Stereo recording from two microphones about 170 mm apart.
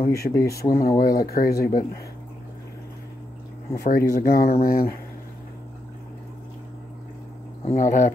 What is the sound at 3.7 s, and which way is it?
Speech, 55° left (ahead or behind).